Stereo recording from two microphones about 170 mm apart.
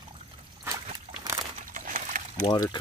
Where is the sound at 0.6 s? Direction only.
20° right (ahead or behind).